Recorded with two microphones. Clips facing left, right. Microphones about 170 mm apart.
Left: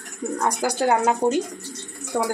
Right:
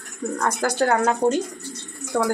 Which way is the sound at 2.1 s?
15° left (ahead or behind).